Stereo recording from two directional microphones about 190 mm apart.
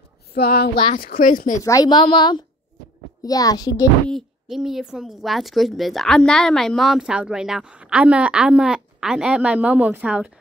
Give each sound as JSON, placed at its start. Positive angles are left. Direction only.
{"t": 0.3, "sound": "speech", "side_deg": 55}
{"t": 1.6, "sound": "speech", "side_deg": 20}
{"t": 4.1, "sound": "speech", "side_deg": 0}